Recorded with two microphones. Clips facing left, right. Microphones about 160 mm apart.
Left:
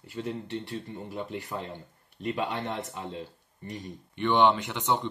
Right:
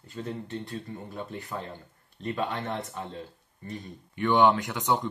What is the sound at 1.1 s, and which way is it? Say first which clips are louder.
Speech: left 2 dB; 20° left (ahead or behind).